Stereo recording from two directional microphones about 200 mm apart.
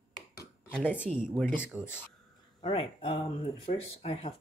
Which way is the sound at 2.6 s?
25° left (ahead or behind).